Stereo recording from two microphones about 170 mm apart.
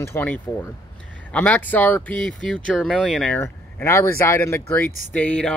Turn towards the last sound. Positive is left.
turn(degrees=5)  # may be behind; listen again after turning